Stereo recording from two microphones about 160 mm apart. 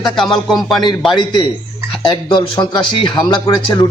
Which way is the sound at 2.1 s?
30° left (ahead or behind).